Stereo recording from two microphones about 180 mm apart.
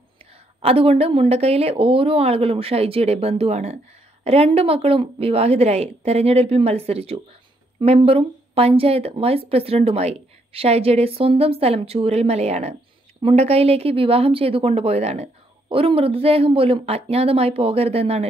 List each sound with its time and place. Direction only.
0.6 s a woman's voice: 35° right (ahead or behind)